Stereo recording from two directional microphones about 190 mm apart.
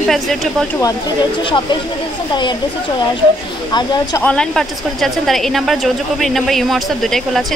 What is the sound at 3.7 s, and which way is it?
Speech, 20° left (ahead or behind).